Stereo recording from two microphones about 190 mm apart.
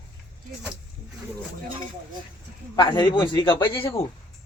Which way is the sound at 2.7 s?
25° left (ahead or behind).